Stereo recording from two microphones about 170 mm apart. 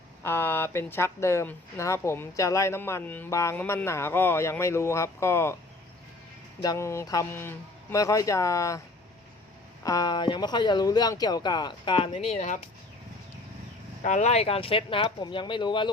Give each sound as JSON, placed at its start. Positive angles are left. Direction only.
{"t": 0.2, "sound": "speech", "side_deg": 15}
{"t": 6.6, "sound": "speech", "side_deg": 20}
{"t": 9.8, "sound": "speech", "side_deg": 20}
{"t": 14.0, "sound": "speech", "side_deg": 45}